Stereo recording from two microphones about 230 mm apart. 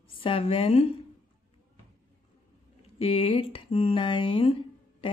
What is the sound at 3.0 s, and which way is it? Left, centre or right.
Speech, left.